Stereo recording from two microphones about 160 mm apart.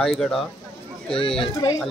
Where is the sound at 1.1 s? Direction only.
35° left (ahead or behind).